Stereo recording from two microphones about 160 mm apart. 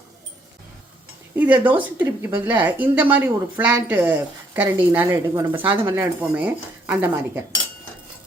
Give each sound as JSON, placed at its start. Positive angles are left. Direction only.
{"t": 1.5, "sound": "a woman's voice", "side_deg": -30}
{"t": 1.8, "sound": "a woman's voice", "side_deg": -10}